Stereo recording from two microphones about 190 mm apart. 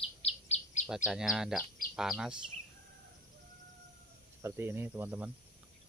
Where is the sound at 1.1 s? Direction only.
5° right (ahead or behind).